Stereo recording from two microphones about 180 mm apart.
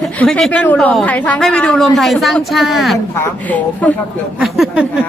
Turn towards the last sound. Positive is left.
turn(degrees=-5)  # may be behind; listen again after turning